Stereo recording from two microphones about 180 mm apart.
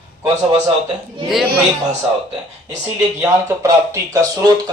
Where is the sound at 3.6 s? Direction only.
20° right (ahead or behind).